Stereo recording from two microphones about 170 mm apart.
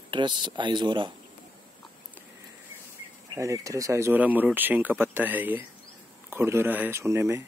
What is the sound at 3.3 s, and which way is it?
Speech, 20° right (ahead or behind).